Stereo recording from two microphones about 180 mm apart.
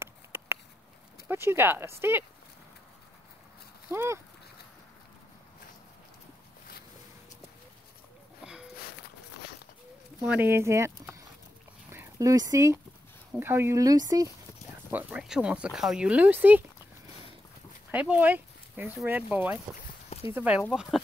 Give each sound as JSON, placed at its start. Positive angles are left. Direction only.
{"t": 0.0, "sound": "a sound", "side_deg": -15}
{"t": 1.3, "sound": "speech", "side_deg": -15}
{"t": 3.9, "sound": "speech", "side_deg": -15}
{"t": 10.2, "sound": "speech", "side_deg": -10}
{"t": 14.9, "sound": "speech", "side_deg": -10}
{"t": 17.9, "sound": "speech", "side_deg": -10}